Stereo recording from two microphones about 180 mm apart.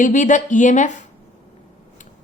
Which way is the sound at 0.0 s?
45° left (ahead or behind).